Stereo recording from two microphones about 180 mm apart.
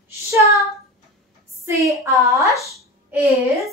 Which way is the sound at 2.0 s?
15° right (ahead or behind).